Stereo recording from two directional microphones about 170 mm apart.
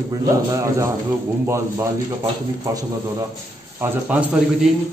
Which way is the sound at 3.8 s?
10° right (ahead or behind).